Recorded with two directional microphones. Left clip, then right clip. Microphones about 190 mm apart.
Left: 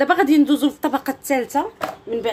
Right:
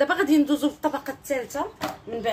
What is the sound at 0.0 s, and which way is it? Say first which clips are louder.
A woman's voice: left 5 dB; 35° left (ahead or behind).